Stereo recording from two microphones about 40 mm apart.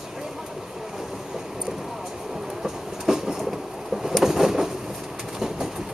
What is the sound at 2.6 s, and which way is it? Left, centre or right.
Vehicle, centre.